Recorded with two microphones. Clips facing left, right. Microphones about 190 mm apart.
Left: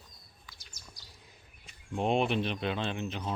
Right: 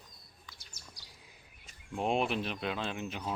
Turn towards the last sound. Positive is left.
turn(degrees=-5)  # may be behind; listen again after turning